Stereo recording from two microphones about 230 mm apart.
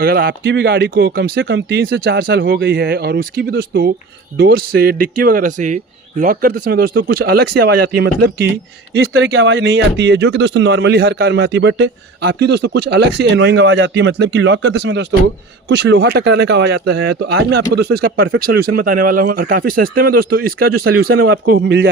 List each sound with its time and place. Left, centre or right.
0.0 s a man's voice: right